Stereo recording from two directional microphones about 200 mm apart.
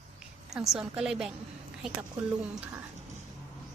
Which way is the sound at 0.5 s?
Centre (ahead or behind).